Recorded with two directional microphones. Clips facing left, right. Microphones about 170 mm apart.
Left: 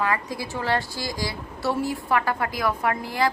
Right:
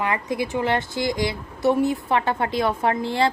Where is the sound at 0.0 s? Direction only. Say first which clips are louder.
Right 2 dB; 20° right (ahead or behind).